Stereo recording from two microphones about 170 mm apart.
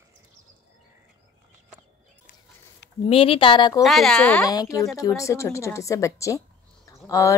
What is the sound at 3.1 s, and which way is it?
Speech, 35° left (ahead or behind).